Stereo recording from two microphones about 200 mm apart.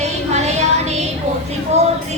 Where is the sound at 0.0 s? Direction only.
35° right (ahead or behind).